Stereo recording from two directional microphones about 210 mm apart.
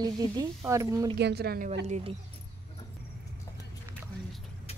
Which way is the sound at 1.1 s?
50° right (ahead or behind).